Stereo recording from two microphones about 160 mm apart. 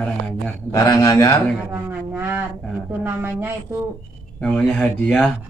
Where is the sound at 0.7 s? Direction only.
25° left (ahead or behind).